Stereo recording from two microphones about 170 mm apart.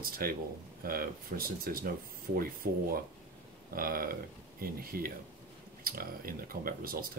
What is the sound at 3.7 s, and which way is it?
Speech, 60° right (ahead or behind).